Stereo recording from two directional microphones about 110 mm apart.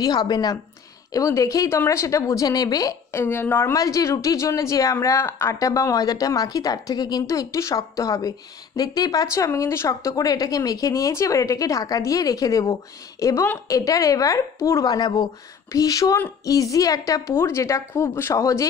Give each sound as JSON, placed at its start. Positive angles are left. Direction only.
{"t": 0.0, "sound": "a woman's voice", "side_deg": 35}
{"t": 3.7, "sound": "a woman's voice", "side_deg": 30}